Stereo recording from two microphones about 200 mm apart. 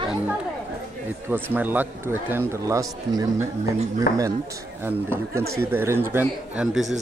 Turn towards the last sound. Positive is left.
turn(degrees=-5)  # may be behind; listen again after turning